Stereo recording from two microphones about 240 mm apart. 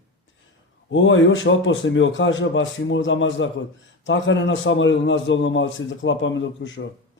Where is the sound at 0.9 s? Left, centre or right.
Left.